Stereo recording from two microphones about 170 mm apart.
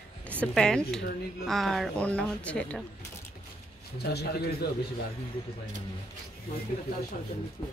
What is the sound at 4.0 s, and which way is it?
Speech, 70° left (ahead or behind).